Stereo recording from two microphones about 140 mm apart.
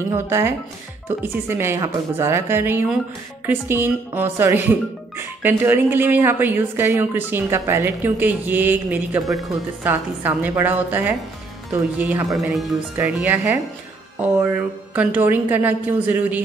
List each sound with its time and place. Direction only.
0.1 s speech: 20° right (ahead or behind)
12.3 s speech: centre (ahead or behind)
12.9 s speech: 10° right (ahead or behind)
15.0 s speech: 15° right (ahead or behind)